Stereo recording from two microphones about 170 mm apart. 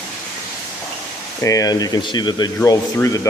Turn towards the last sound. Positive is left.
turn(degrees=20)  # may be behind; listen again after turning